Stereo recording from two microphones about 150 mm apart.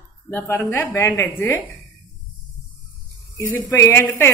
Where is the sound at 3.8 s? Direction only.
15° left (ahead or behind).